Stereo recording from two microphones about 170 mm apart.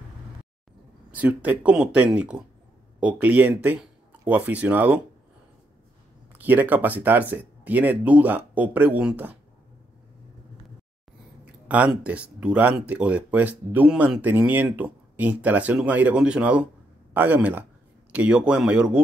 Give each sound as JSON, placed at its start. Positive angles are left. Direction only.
{"t": 1.1, "sound": "speech", "side_deg": -10}
{"t": 6.3, "sound": "speech", "side_deg": -10}
{"t": 11.6, "sound": "speech", "side_deg": -10}